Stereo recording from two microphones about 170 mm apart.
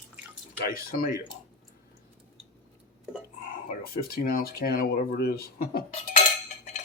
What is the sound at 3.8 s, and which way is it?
Speech, 60° left (ahead or behind).